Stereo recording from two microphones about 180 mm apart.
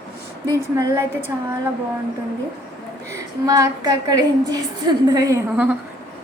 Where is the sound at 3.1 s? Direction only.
20° right (ahead or behind).